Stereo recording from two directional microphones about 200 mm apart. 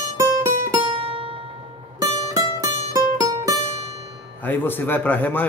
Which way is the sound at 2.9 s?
15° right (ahead or behind).